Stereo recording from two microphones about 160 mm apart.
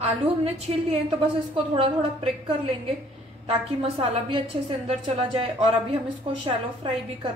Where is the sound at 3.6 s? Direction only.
40° right (ahead or behind).